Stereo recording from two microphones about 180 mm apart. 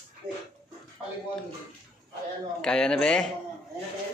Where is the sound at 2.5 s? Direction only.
5° left (ahead or behind).